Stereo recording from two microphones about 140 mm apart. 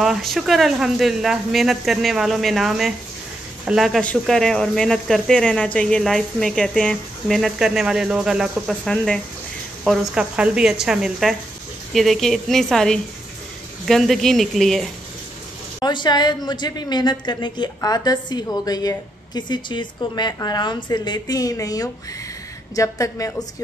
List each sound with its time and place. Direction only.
0.0 s speech: centre (ahead or behind)
9.8 s speech: 5° right (ahead or behind)
15.8 s a woman's voice: 30° left (ahead or behind)